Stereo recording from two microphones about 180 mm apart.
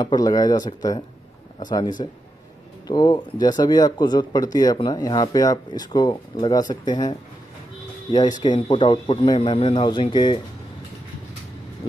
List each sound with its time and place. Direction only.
0.0 s speech: 20° left (ahead or behind)
8.4 s speech: 25° left (ahead or behind)